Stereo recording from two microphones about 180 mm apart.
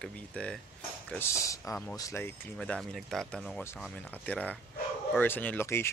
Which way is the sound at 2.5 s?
5° left (ahead or behind).